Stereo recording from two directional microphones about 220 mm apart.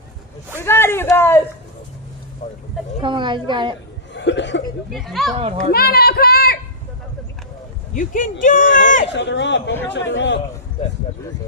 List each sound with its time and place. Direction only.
0.6 s a man's voice: 10° left (ahead or behind)
3.0 s a woman's voice: 20° right (ahead or behind)
4.1 s chuckle: 55° left (ahead or behind)
4.9 s speech: centre (ahead or behind)
5.4 s a woman's voice: 30° right (ahead or behind)
5.7 s a sound: 45° left (ahead or behind)
7.9 s speech: 35° left (ahead or behind)
9.0 s speech: 55° left (ahead or behind)